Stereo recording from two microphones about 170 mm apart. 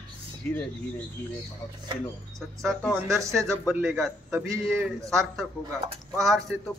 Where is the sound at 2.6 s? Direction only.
Centre (ahead or behind).